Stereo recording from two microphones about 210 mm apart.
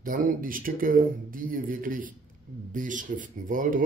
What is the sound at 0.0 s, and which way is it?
Speech, 40° right (ahead or behind).